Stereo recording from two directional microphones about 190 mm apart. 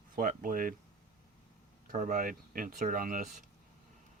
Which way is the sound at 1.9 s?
40° right (ahead or behind).